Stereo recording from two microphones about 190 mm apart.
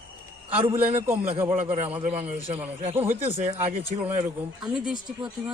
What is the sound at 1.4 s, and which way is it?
Speech, 40° right (ahead or behind).